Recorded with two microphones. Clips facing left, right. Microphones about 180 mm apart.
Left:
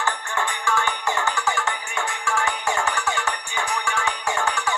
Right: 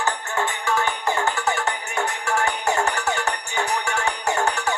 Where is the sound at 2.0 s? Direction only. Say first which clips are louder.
Right 2 dB; 40° right (ahead or behind).